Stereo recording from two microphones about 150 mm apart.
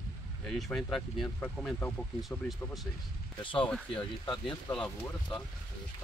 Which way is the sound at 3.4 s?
35° left (ahead or behind).